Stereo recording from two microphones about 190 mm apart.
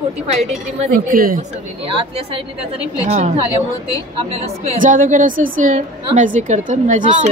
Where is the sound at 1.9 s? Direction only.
30° right (ahead or behind).